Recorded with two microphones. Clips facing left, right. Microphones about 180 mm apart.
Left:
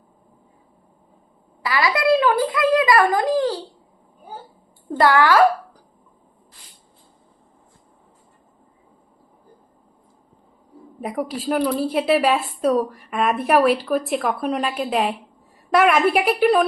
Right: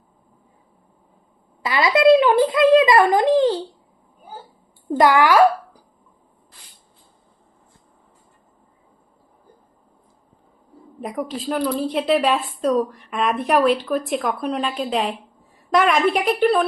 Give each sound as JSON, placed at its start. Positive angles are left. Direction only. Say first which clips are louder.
{"t": 1.6, "sound": "a child's voice", "louder": "right 5 dB", "side_deg": -25}
{"t": 4.9, "sound": "speech", "louder": "right 1 dB", "side_deg": -15}
{"t": 11.0, "sound": "a woman's voice", "louder": "left 1 dB", "side_deg": 10}